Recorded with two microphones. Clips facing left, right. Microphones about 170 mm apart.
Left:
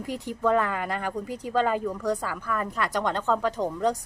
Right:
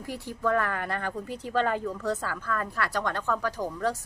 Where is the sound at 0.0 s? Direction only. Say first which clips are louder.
Left 3 dB; 20° left (ahead or behind).